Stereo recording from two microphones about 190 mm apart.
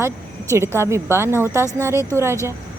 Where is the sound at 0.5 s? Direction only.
15° right (ahead or behind).